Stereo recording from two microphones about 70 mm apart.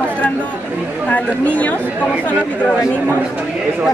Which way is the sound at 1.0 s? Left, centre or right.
Left.